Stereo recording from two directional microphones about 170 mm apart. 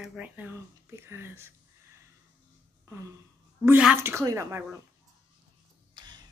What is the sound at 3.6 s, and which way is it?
Speech, 10° right (ahead or behind).